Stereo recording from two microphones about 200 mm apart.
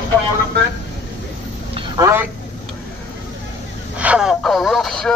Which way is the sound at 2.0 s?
10° right (ahead or behind).